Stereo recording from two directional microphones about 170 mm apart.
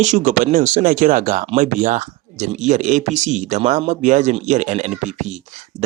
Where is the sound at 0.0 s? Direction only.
45° right (ahead or behind).